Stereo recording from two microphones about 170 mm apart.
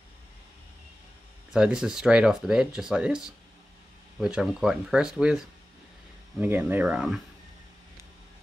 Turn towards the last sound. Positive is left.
turn(degrees=-5)  # may be behind; listen again after turning